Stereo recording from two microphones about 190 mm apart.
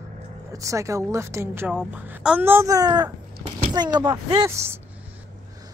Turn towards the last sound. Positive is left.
turn(degrees=-15)  # may be behind; listen again after turning